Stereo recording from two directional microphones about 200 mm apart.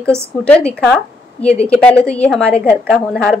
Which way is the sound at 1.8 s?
5° left (ahead or behind).